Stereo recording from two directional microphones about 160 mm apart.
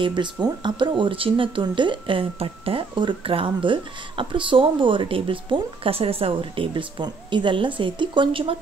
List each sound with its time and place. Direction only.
0.0 s speech: 30° right (ahead or behind)